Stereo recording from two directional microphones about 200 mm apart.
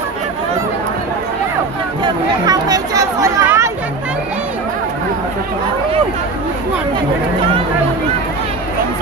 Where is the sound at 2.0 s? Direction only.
20° right (ahead or behind).